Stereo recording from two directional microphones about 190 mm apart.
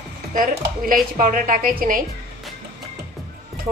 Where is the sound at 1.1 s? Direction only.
45° right (ahead or behind).